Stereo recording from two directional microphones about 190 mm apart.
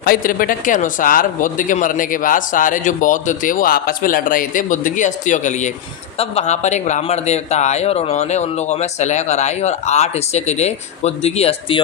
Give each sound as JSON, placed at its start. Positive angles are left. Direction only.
{"t": 0.0, "sound": "speech", "side_deg": 50}